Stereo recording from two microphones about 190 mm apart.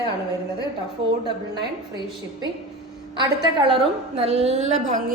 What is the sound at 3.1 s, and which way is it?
A woman's voice, 25° right (ahead or behind).